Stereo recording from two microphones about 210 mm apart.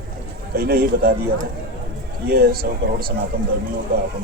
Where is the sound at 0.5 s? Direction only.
45° right (ahead or behind).